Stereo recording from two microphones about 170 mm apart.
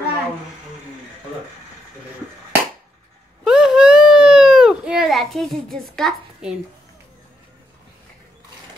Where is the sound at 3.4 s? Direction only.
5° right (ahead or behind).